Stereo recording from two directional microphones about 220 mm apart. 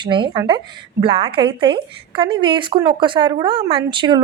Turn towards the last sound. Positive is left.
turn(degrees=-20)  # may be behind; listen again after turning